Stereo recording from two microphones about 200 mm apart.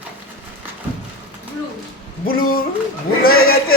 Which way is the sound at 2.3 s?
50° left (ahead or behind).